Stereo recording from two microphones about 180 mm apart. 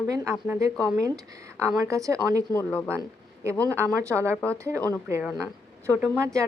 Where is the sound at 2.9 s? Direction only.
15° right (ahead or behind).